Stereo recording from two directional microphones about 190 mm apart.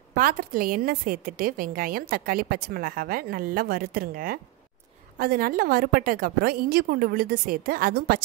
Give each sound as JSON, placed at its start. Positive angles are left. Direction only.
{"t": 0.1, "sound": "a woman's voice", "side_deg": -50}